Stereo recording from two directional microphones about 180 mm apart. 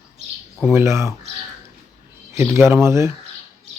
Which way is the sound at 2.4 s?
15° right (ahead or behind).